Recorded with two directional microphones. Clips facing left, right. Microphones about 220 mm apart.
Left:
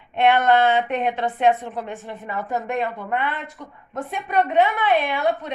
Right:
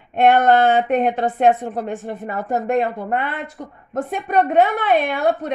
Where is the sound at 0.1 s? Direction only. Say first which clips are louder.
Right 3 dB; 45° right (ahead or behind).